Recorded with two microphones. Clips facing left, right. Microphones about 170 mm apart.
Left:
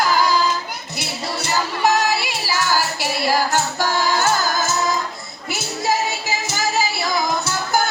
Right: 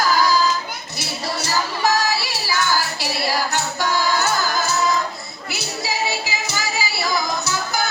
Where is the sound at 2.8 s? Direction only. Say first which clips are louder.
Left 2 dB; 50° left (ahead or behind).